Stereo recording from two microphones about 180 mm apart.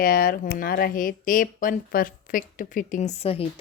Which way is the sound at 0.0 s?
55° left (ahead or behind).